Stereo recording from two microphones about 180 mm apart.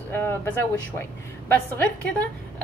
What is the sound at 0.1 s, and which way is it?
Speech, 10° left (ahead or behind).